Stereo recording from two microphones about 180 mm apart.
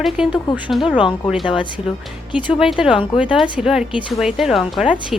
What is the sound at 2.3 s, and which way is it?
A woman's voice, 5° right (ahead or behind).